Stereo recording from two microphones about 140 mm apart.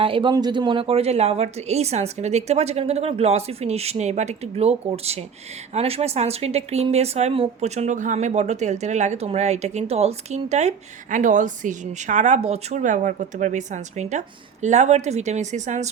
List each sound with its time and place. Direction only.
0.0 s a woman's voice: 35° right (ahead or behind); by 15.9 s 60° right (ahead or behind)